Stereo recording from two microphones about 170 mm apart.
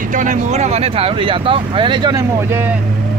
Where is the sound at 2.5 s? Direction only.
10° right (ahead or behind).